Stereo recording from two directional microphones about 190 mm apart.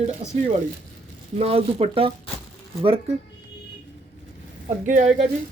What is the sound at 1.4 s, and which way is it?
Speech, 35° right (ahead or behind).